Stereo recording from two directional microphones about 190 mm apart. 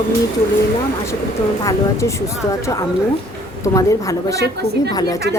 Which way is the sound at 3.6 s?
15° left (ahead or behind).